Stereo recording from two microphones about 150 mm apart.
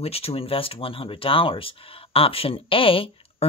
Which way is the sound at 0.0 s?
40° left (ahead or behind).